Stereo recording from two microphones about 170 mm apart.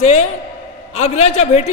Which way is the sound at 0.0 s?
40° left (ahead or behind).